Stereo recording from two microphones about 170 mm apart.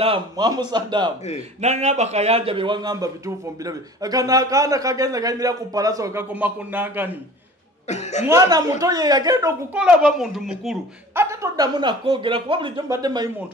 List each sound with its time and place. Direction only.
0.0 s speech: 30° right (ahead or behind)
1.6 s speech: 40° right (ahead or behind); by 7.1 s 10° right (ahead or behind)
7.9 s speech: 40° left (ahead or behind)
8.3 s speech: 20° right (ahead or behind)
9.8 s a child's voice: 5° right (ahead or behind)
11.1 s speech: 20° right (ahead or behind)